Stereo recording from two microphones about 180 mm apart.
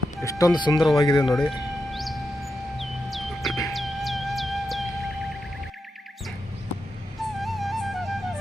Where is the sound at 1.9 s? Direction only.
Centre (ahead or behind).